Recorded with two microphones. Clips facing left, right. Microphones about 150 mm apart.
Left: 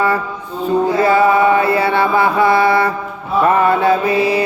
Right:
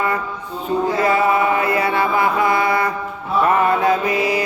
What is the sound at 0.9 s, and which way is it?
Mantra, 30° left (ahead or behind).